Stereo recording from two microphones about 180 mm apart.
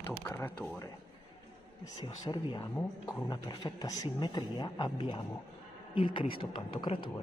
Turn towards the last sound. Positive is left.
turn(degrees=30)  # may be behind; listen again after turning